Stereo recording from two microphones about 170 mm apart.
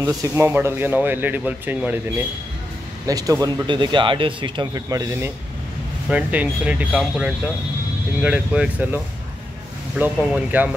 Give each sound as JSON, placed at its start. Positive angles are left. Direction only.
{"t": 0.0, "sound": "speech", "side_deg": -15}
{"t": 3.1, "sound": "speech", "side_deg": -20}